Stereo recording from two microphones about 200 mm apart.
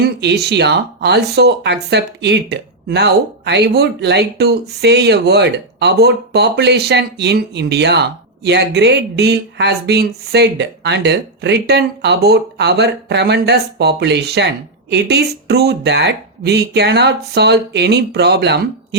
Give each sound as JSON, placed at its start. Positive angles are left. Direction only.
{"t": 0.0, "sound": "speech", "side_deg": -55}